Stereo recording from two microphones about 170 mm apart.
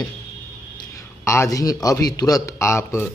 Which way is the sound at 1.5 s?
20° left (ahead or behind).